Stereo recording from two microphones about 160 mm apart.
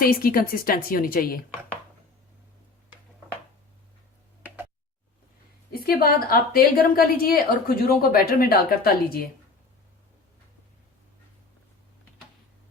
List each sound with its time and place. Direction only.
0.0 s speech: 65° left (ahead or behind)
5.7 s a woman's voice: 70° left (ahead or behind)